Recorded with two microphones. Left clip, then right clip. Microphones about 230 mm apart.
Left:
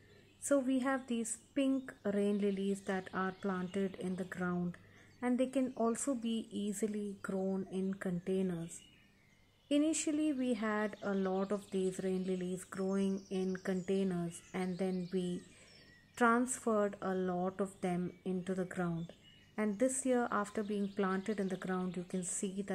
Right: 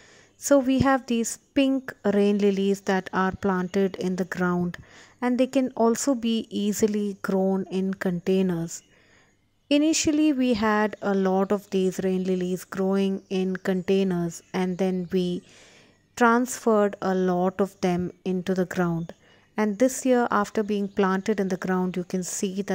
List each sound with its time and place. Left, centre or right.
0.4 s a woman's voice: right